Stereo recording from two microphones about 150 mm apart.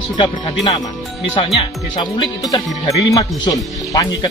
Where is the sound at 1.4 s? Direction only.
35° left (ahead or behind).